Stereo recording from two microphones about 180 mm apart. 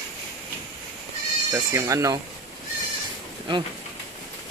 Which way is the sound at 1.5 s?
15° right (ahead or behind).